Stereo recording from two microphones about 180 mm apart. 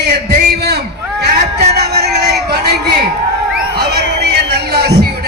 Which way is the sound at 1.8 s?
65° right (ahead or behind).